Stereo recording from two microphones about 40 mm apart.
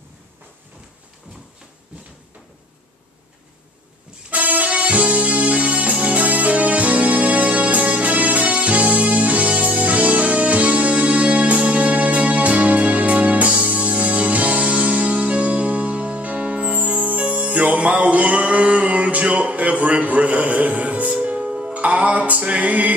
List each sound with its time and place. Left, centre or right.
4.3 s music: right
21.7 s music: right